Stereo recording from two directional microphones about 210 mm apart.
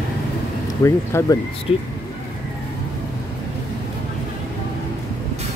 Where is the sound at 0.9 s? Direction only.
15° left (ahead or behind).